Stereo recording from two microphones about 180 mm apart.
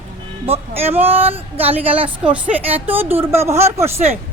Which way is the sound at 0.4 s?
35° right (ahead or behind).